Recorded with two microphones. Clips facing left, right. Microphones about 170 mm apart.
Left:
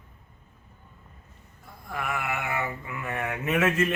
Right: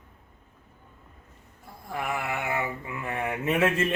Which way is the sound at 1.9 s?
30° right (ahead or behind).